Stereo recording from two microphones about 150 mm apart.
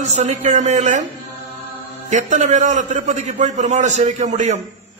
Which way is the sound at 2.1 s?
50° right (ahead or behind).